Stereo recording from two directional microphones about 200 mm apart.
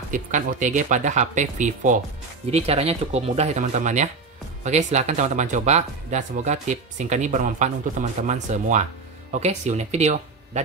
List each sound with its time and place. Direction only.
0.1 s speech: 40° right (ahead or behind)